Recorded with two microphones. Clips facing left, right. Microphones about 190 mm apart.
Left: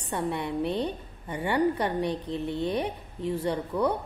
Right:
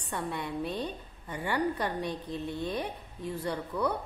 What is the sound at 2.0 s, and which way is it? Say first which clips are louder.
Speech: left 5 dB; 65° left (ahead or behind).